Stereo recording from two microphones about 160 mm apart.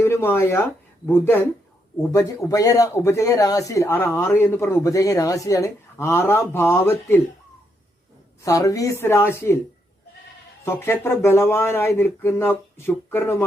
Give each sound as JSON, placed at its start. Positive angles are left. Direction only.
{"t": 0.0, "sound": "speech", "side_deg": 15}
{"t": 8.4, "sound": "speech", "side_deg": 20}
{"t": 10.7, "sound": "speech", "side_deg": 15}